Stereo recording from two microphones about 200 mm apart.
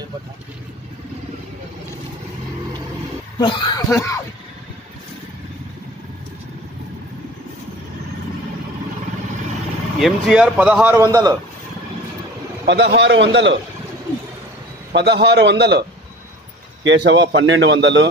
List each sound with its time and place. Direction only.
3.3 s speech: 25° left (ahead or behind)
9.9 s speech: centre (ahead or behind)
12.6 s a man's voice: 60° right (ahead or behind)
14.9 s a man's voice: 60° right (ahead or behind)
16.8 s a man's voice: 60° right (ahead or behind)